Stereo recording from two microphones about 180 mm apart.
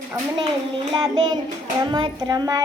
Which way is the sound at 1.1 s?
25° right (ahead or behind).